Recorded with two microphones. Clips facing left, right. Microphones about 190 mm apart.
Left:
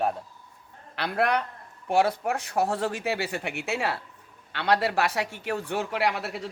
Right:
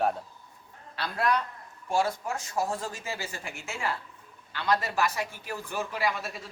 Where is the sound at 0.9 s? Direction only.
60° left (ahead or behind).